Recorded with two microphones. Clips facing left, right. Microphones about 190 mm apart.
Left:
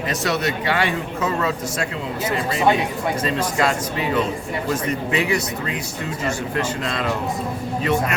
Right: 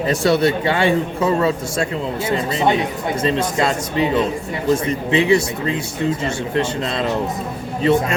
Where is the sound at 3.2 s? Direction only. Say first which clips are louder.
Right 4 dB; 25° right (ahead or behind).